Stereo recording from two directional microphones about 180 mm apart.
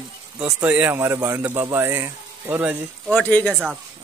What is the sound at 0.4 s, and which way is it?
A man's voice, 10° right (ahead or behind).